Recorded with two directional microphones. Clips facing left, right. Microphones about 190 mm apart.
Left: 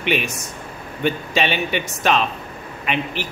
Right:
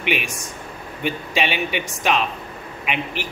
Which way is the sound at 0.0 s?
10° right (ahead or behind).